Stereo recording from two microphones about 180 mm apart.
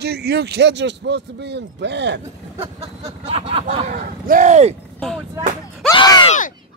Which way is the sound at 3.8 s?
50° right (ahead or behind).